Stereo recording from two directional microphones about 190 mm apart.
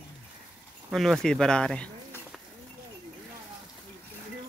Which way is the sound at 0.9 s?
Centre (ahead or behind).